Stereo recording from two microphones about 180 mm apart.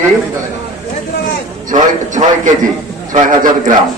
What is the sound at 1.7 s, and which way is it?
A man's voice, 45° right (ahead or behind).